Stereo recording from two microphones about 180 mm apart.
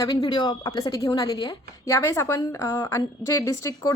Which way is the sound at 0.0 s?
20° left (ahead or behind).